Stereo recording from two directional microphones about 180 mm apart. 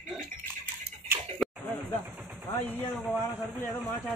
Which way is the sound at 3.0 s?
Centre (ahead or behind).